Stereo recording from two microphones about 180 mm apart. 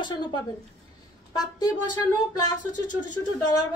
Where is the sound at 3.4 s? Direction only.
20° left (ahead or behind).